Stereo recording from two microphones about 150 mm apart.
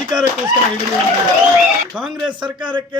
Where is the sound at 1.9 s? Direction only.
5° right (ahead or behind).